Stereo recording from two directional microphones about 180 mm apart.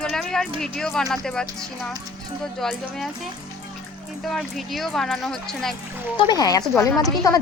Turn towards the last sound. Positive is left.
turn(degrees=20)  # may be behind; listen again after turning